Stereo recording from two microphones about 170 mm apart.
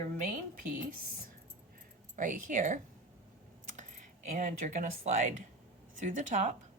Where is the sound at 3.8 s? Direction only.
50° right (ahead or behind).